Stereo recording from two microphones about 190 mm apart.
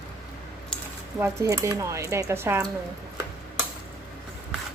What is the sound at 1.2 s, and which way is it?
Speech, 15° right (ahead or behind).